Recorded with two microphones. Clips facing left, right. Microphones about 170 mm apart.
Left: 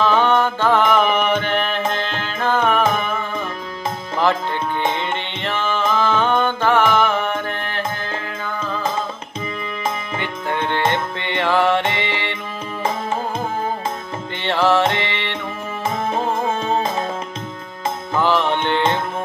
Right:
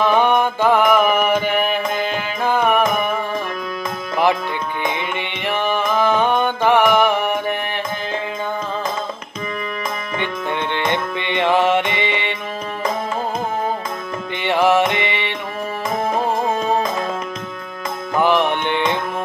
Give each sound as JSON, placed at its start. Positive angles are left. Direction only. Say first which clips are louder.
{"t": 0.0, "sound": "music", "louder": "right 1 dB", "side_deg": -15}
{"t": 5.1, "sound": "music", "louder": "right 1 dB", "side_deg": -15}
{"t": 11.1, "sound": "music", "louder": "right 5 dB", "side_deg": -15}
{"t": 14.4, "sound": "music", "louder": "right 1 dB", "side_deg": -15}
{"t": 18.1, "sound": "music", "louder": "right 2 dB", "side_deg": -15}